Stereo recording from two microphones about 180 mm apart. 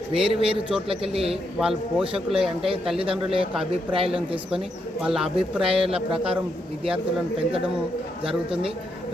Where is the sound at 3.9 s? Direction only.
30° right (ahead or behind).